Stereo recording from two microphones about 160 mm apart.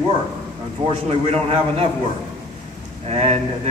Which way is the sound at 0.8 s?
40° right (ahead or behind).